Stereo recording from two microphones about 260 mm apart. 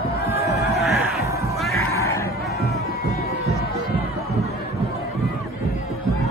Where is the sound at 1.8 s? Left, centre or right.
Centre.